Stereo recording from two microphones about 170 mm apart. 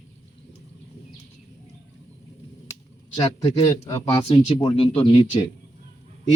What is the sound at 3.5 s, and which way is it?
Speech, 30° left (ahead or behind).